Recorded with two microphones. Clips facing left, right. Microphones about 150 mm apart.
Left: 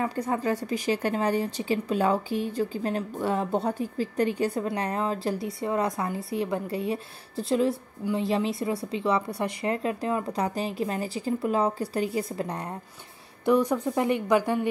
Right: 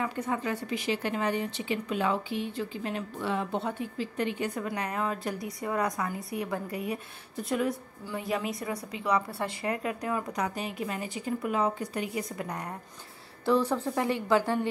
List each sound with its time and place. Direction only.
0.0 s a woman's voice: 40° left (ahead or behind)
8.0 s speech: 20° left (ahead or behind)
13.5 s speech: 15° left (ahead or behind)